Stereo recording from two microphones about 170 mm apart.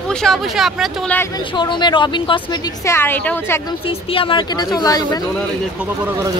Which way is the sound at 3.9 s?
30° left (ahead or behind).